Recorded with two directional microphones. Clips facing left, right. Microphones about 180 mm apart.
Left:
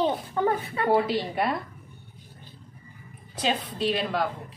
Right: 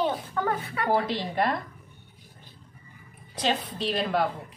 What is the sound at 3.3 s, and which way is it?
Speech, 5° left (ahead or behind).